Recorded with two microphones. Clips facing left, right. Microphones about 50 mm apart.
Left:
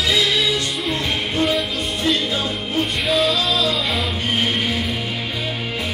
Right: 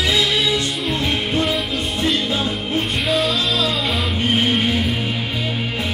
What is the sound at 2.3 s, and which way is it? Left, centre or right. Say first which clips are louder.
Music: right 2 dB; right.